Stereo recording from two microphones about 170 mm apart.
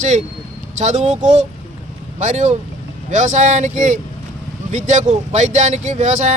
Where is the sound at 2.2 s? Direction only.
45° right (ahead or behind).